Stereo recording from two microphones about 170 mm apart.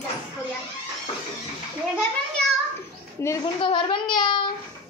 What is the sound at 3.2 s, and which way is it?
Speech, 15° left (ahead or behind).